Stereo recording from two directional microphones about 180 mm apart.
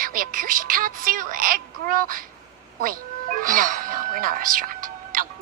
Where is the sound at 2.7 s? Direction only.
50° right (ahead or behind).